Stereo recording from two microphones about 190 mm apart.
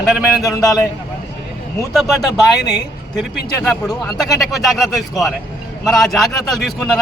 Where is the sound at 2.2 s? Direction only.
20° left (ahead or behind).